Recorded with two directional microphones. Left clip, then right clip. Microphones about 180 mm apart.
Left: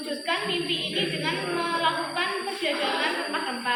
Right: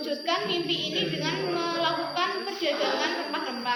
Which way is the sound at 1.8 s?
70° right (ahead or behind).